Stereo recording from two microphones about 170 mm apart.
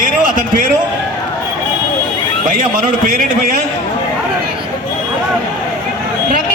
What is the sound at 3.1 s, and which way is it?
Speech, 55° right (ahead or behind).